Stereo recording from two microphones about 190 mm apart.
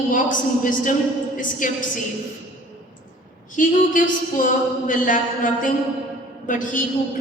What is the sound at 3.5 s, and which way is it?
Speech, 45° left (ahead or behind).